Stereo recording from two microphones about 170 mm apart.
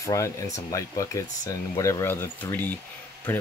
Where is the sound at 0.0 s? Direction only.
20° left (ahead or behind).